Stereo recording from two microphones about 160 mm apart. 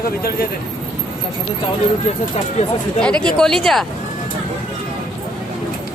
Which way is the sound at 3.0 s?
5° left (ahead or behind).